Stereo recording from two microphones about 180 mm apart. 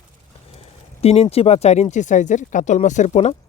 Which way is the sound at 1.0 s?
35° left (ahead or behind).